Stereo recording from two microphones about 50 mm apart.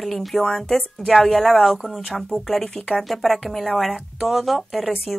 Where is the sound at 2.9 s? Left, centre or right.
Centre.